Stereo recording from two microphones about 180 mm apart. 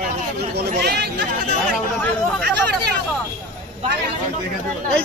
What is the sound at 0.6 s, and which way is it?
Speech, 65° right (ahead or behind).